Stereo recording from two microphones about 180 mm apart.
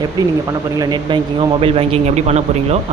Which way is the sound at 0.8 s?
25° right (ahead or behind).